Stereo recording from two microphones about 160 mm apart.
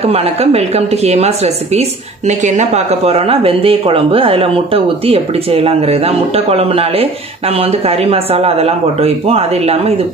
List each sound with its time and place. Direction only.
0.0 s speech: 40° right (ahead or behind)